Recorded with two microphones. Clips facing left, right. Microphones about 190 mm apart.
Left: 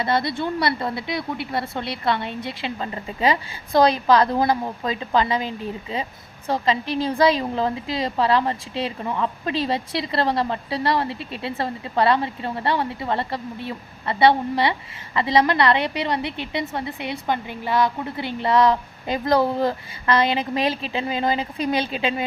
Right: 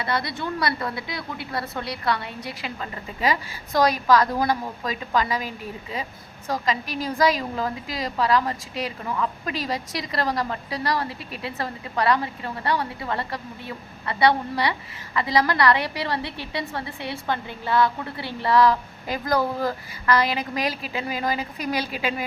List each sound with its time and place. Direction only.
0.0 s a woman's voice: 25° left (ahead or behind)